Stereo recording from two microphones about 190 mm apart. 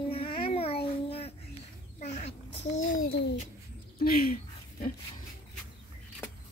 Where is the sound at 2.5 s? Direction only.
75° left (ahead or behind).